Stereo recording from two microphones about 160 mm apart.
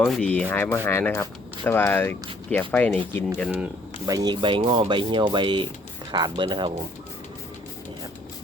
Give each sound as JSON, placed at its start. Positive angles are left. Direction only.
{"t": 0.0, "sound": "speech", "side_deg": 5}
{"t": 4.0, "sound": "speech", "side_deg": -25}